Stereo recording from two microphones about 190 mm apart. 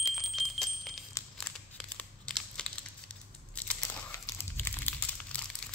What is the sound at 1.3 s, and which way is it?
Crumpling, 5° left (ahead or behind).